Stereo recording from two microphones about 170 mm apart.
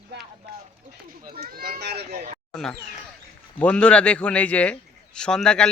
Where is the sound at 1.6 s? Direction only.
65° right (ahead or behind).